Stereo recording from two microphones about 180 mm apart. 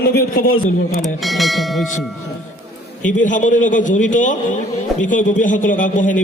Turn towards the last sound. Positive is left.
turn(degrees=45)  # may be behind; listen again after turning